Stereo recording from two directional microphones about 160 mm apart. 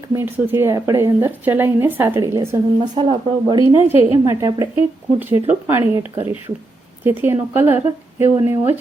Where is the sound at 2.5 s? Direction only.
30° right (ahead or behind).